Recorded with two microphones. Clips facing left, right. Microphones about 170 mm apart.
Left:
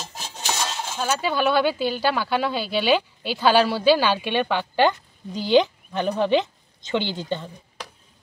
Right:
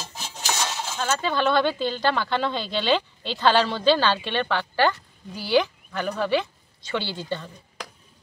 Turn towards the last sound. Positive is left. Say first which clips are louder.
# left 3 dB
turn(degrees=20)  # may be behind; listen again after turning